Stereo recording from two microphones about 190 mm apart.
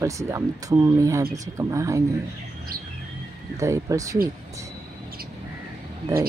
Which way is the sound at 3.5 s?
15° right (ahead or behind).